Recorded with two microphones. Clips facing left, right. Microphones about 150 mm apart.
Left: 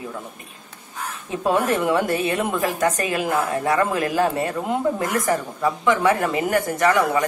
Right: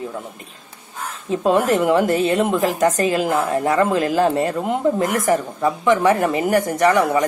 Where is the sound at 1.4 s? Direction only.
25° right (ahead or behind).